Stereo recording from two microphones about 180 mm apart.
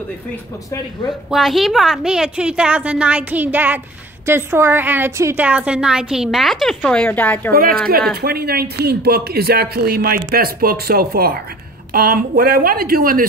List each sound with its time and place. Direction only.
1.3 s a woman's voice: centre (ahead or behind)
7.5 s a woman's voice: 55° right (ahead or behind)